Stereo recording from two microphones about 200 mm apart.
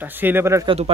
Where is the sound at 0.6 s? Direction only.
30° right (ahead or behind).